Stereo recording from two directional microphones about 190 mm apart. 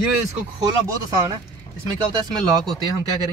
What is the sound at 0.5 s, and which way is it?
Speech, 20° right (ahead or behind).